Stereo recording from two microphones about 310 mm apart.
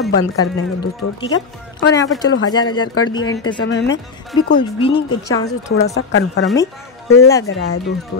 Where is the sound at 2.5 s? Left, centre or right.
Centre.